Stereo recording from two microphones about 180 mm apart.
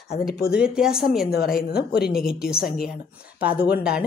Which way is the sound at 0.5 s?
5° right (ahead or behind).